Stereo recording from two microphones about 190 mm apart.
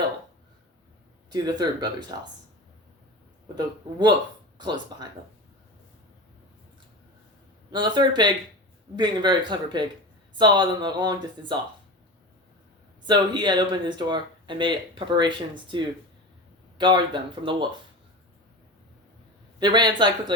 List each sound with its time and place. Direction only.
1.3 s speech: 20° right (ahead or behind)
3.5 s speech: 20° right (ahead or behind)
7.7 s speech: 25° right (ahead or behind)
13.1 s speech: 25° right (ahead or behind)
19.5 s speech: 25° right (ahead or behind)